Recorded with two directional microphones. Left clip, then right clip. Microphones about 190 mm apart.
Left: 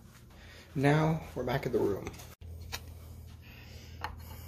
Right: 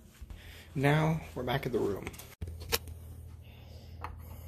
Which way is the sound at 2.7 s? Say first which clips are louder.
Right 9 dB; 50° right (ahead or behind).